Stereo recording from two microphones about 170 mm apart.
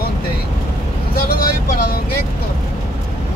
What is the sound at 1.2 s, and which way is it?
Speech, 60° left (ahead or behind).